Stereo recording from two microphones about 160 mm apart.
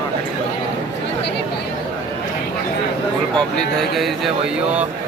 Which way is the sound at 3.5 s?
Centre (ahead or behind).